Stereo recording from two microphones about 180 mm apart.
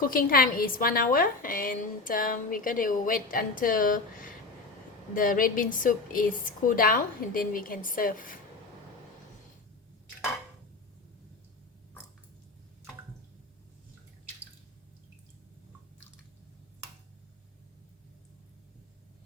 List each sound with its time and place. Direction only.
0.0 s a woman's voice: 50° left (ahead or behind)